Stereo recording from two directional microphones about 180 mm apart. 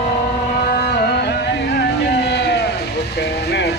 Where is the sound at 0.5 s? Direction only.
55° left (ahead or behind); by 2.7 s 70° left (ahead or behind).